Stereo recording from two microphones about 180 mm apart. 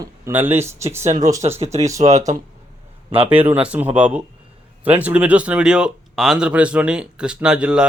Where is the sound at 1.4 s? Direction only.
35° right (ahead or behind).